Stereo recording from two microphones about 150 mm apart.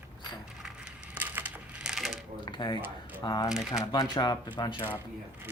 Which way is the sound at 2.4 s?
30° left (ahead or behind).